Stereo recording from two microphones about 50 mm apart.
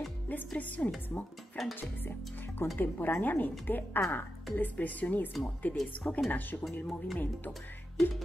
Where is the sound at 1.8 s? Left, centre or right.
Left.